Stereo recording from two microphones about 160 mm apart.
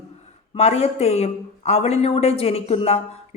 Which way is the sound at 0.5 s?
40° left (ahead or behind).